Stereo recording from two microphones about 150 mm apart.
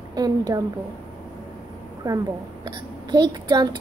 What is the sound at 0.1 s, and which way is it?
Speech, 25° right (ahead or behind).